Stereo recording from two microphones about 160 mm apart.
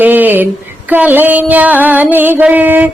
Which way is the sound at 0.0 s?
10° right (ahead or behind).